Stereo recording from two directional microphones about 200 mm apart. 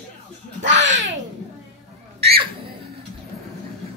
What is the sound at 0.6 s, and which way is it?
Babbling, 65° right (ahead or behind).